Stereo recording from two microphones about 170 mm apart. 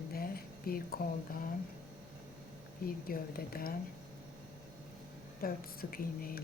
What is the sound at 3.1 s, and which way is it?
Speech, 60° left (ahead or behind).